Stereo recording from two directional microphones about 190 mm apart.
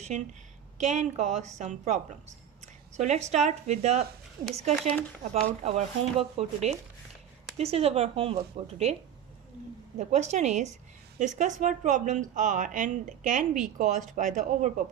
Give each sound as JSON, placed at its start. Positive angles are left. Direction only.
{"t": 0.1, "sound": "a woman's voice", "side_deg": -40}
{"t": 4.7, "sound": "speech", "side_deg": 5}
{"t": 5.6, "sound": "a woman's voice", "side_deg": -35}
{"t": 10.0, "sound": "a woman's voice", "side_deg": -35}